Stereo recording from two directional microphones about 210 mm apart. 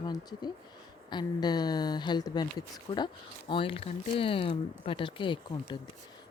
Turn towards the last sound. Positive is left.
turn(degrees=20)  # may be behind; listen again after turning